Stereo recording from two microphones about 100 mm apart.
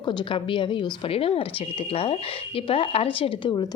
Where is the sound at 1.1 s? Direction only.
70° left (ahead or behind); by 3.6 s 55° left (ahead or behind).